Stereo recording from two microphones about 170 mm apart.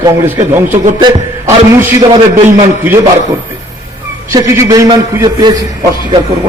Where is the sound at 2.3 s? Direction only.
40° right (ahead or behind).